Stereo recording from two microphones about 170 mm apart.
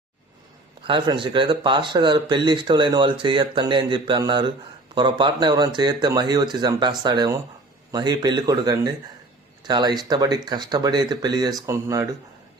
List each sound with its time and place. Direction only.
0.9 s speech: 30° right (ahead or behind)